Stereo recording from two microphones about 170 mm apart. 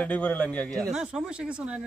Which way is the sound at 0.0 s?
10° left (ahead or behind).